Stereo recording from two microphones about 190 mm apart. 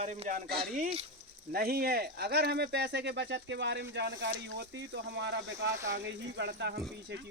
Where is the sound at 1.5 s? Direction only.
55° right (ahead or behind).